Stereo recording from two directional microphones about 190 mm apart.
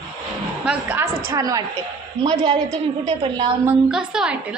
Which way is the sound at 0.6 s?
10° right (ahead or behind).